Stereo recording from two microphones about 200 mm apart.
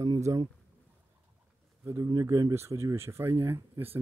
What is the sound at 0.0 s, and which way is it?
Speech, 15° right (ahead or behind).